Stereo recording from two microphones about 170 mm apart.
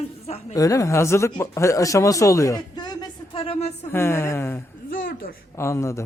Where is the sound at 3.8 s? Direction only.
15° left (ahead or behind).